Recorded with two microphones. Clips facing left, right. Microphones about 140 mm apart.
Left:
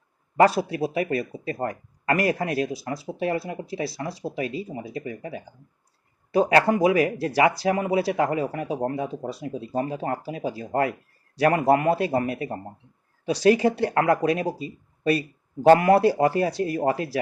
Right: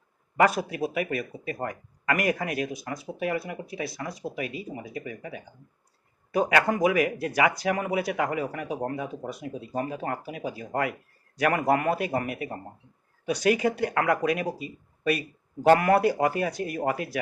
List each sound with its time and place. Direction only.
0.3 s a man's voice: 30° left (ahead or behind)